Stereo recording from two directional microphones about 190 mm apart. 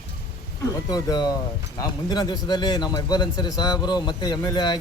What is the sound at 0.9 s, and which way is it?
A man's voice, 20° left (ahead or behind).